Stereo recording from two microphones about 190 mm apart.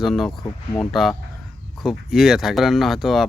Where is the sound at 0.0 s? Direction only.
Centre (ahead or behind).